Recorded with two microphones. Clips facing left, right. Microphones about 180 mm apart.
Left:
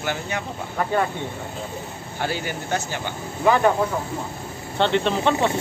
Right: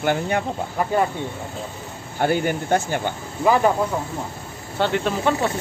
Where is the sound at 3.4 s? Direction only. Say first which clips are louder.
Even; 5° right (ahead or behind).